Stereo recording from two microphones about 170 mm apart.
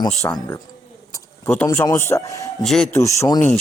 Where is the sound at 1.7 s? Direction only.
15° left (ahead or behind).